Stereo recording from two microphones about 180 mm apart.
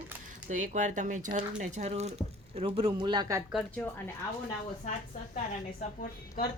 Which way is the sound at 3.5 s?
Centre (ahead or behind).